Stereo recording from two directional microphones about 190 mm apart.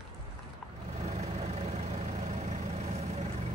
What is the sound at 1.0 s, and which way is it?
Vehicle, 35° right (ahead or behind).